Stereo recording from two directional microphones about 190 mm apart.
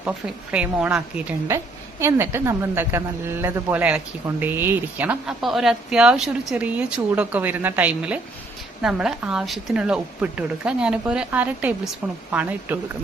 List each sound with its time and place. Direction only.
0.5 s a woman's voice: 5° right (ahead or behind)